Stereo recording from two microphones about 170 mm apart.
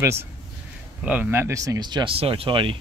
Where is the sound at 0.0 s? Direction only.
15° right (ahead or behind); by 2.8 s 30° right (ahead or behind).